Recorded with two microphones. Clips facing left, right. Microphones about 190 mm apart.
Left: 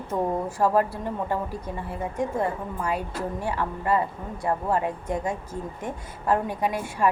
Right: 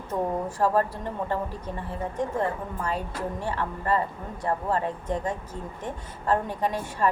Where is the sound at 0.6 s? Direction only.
10° left (ahead or behind).